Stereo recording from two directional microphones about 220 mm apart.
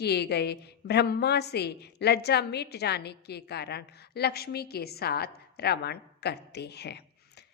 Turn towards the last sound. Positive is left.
turn(degrees=50)  # may be behind; listen again after turning